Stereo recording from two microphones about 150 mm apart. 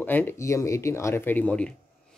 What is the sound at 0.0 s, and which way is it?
Speech, 15° left (ahead or behind).